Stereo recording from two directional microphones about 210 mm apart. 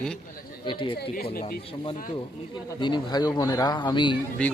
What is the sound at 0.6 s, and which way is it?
Speech, 25° left (ahead or behind).